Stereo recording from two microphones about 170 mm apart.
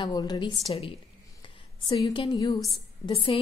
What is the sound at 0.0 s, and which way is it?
A woman's voice, 25° left (ahead or behind).